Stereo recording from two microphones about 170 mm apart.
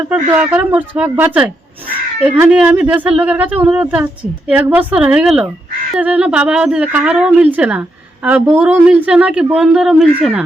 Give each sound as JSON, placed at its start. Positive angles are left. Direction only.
{"t": 0.1, "sound": "a woman's voice", "side_deg": -10}